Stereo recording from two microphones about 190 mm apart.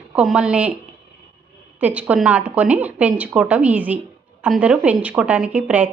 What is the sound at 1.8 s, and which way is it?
A woman's voice, 5° right (ahead or behind).